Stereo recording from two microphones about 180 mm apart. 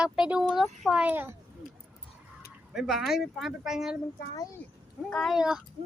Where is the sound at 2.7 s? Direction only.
Centre (ahead or behind).